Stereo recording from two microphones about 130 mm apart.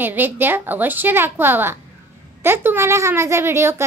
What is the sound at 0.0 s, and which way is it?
A woman's voice, 15° right (ahead or behind).